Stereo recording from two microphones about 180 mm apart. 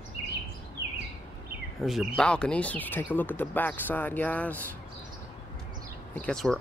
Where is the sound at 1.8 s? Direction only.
Centre (ahead or behind).